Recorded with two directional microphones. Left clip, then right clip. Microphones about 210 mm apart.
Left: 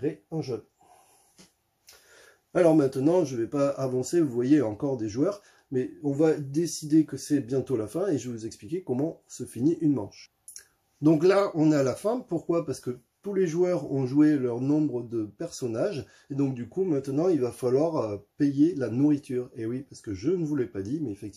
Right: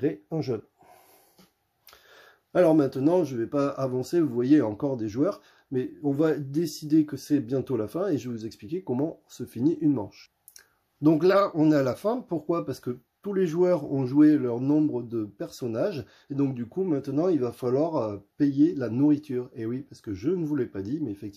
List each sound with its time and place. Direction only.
0.0 s speech: 55° right (ahead or behind)
2.5 s speech: 25° right (ahead or behind)